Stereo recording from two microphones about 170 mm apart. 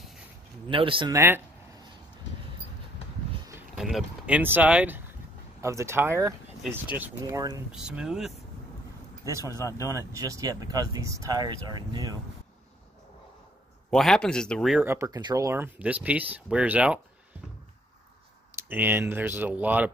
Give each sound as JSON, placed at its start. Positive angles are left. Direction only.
{"t": 0.7, "sound": "speech", "side_deg": -30}
{"t": 1.1, "sound": "speech", "side_deg": -15}
{"t": 3.7, "sound": "speech", "side_deg": -5}
{"t": 7.7, "sound": "speech", "side_deg": -5}
{"t": 9.6, "sound": "speech", "side_deg": 20}
{"t": 9.8, "sound": "speech", "side_deg": -15}
{"t": 13.8, "sound": "speech", "side_deg": 0}
{"t": 14.9, "sound": "speech", "side_deg": -20}
{"t": 18.6, "sound": "speech", "side_deg": -10}